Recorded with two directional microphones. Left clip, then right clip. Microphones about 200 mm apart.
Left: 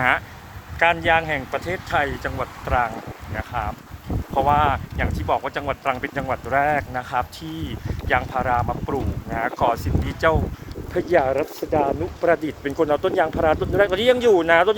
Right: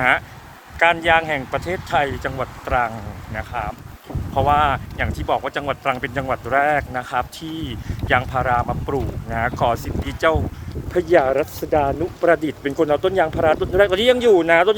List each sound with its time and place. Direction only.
0.8 s speech: 15° right (ahead or behind)